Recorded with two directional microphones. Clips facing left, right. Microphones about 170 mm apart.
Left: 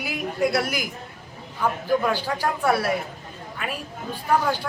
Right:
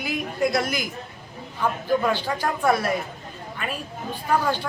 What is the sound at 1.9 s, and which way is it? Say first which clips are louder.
A woman's voice: right 1 dB; 10° left (ahead or behind).